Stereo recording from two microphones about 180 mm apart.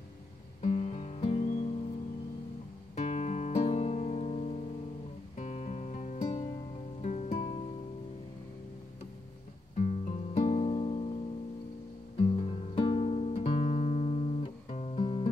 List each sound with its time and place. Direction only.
0.6 s guitar: 40° left (ahead or behind)
3.0 s guitar: 40° left (ahead or behind)
5.4 s music: 40° left (ahead or behind)
9.8 s music: 35° left (ahead or behind)
12.2 s music: 30° left (ahead or behind)